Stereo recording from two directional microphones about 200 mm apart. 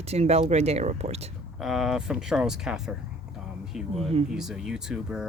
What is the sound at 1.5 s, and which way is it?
Speech, centre (ahead or behind).